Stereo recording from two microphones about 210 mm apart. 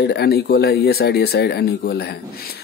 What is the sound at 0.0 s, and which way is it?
Speech, 50° left (ahead or behind).